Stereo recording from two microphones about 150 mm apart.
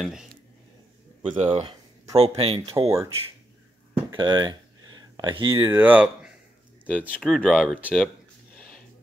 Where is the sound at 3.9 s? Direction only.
30° right (ahead or behind).